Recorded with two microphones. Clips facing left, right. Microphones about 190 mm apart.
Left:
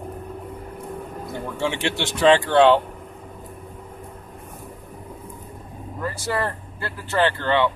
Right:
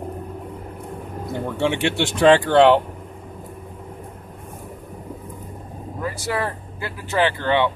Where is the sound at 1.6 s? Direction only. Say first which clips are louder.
Right 4 dB; 20° right (ahead or behind).